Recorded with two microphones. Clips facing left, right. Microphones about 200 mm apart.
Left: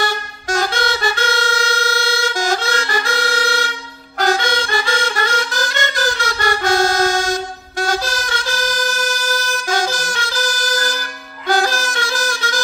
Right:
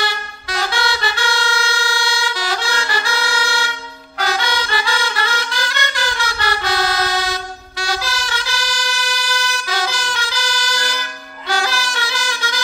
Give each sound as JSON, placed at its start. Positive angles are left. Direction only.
{"t": 0.0, "sound": "vehicle", "side_deg": 45}
{"t": 4.2, "sound": "music", "side_deg": 50}